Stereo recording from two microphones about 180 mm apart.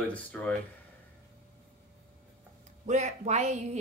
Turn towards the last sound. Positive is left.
turn(degrees=-40)  # may be behind; listen again after turning